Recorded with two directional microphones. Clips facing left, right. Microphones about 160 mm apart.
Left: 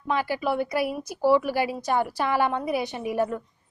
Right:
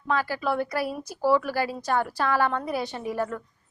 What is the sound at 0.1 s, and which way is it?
A woman's voice, 20° left (ahead or behind).